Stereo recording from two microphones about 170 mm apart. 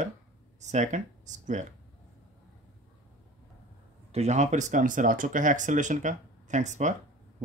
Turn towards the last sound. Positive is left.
turn(degrees=-45)  # may be behind; listen again after turning